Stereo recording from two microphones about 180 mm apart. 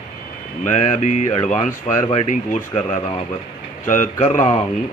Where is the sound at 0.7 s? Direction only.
40° left (ahead or behind).